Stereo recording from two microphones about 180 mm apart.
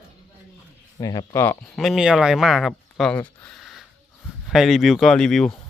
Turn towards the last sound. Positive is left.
turn(degrees=5)  # may be behind; listen again after turning